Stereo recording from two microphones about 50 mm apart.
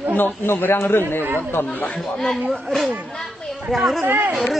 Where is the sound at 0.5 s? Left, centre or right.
Left.